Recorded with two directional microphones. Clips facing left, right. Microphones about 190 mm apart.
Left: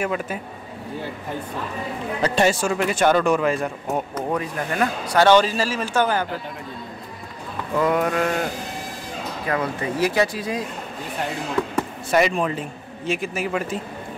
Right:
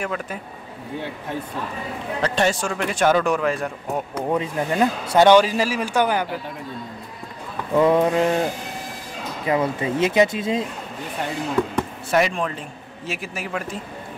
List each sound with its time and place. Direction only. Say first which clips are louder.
0.0 s speech: left 3 dB; 5° left (ahead or behind)
2.2 s speech: left 2 dB; 5° left (ahead or behind)
4.4 s speech: right 5 dB; 20° right (ahead or behind)
7.7 s speech: right 4 dB; 25° right (ahead or behind)
9.5 s speech: right 4 dB; 20° right (ahead or behind)
11.7 s speech: even; 5° left (ahead or behind)